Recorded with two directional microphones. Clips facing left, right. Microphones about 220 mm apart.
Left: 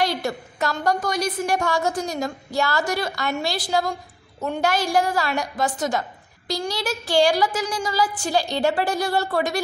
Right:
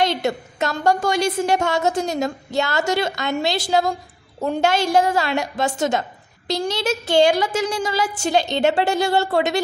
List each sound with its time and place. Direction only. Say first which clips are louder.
0.0 s a woman's voice: right 3 dB; 20° right (ahead or behind)